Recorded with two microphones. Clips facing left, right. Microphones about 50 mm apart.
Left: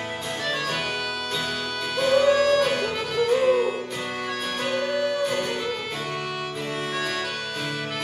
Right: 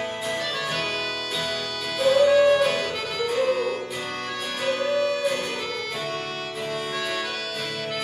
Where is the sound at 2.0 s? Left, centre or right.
Centre.